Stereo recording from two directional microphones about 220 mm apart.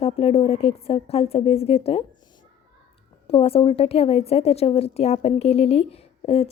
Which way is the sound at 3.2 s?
25° left (ahead or behind).